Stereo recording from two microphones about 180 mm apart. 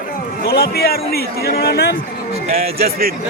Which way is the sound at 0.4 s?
60° left (ahead or behind).